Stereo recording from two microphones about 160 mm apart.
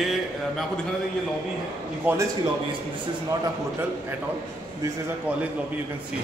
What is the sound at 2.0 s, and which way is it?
Speech, 15° right (ahead or behind).